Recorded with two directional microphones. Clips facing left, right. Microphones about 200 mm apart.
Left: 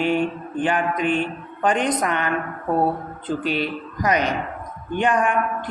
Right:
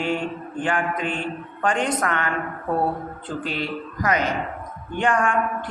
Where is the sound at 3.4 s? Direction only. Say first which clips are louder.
Left 1 dB; 15° left (ahead or behind).